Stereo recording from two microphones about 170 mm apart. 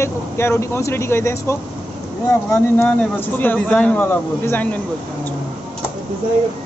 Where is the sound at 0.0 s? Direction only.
15° left (ahead or behind).